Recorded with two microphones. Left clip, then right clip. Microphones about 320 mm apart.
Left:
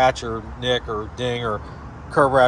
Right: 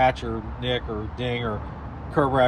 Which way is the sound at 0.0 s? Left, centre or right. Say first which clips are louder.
Left 3 dB; centre.